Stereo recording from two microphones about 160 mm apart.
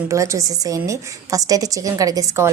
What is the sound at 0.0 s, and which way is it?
A woman's voice, 20° right (ahead or behind).